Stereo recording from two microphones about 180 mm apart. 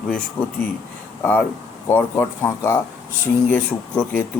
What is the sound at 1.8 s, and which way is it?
Speech, 10° left (ahead or behind).